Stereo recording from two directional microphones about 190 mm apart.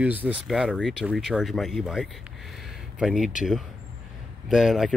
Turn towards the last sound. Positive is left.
turn(degrees=0)  # may be behind; listen again after turning